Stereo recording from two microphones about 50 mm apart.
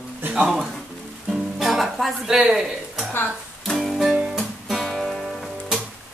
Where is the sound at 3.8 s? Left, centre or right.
Centre.